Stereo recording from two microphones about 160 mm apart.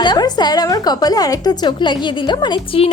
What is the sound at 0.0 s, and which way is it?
A woman's voice, 25° left (ahead or behind).